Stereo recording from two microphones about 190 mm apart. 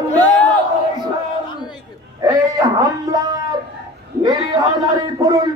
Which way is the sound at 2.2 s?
20° right (ahead or behind).